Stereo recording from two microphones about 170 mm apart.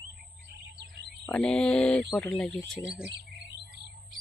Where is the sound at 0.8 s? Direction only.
90° right.